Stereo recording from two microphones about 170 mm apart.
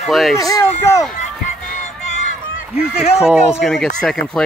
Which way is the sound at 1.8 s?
45° left (ahead or behind).